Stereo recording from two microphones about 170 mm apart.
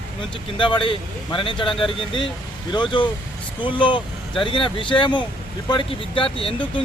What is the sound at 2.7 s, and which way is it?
Speech, 30° left (ahead or behind).